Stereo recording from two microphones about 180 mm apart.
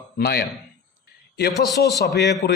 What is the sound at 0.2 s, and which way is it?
Speech, 60° left (ahead or behind).